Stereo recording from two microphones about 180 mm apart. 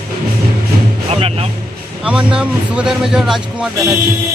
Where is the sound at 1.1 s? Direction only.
35° right (ahead or behind).